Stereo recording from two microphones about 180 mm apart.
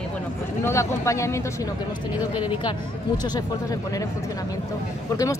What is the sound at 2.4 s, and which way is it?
Speech, 25° left (ahead or behind).